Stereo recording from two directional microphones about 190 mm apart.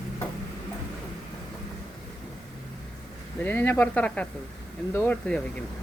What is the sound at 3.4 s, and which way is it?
Speech, 10° left (ahead or behind).